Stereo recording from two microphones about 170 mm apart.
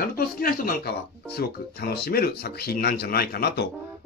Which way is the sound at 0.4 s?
55° left (ahead or behind).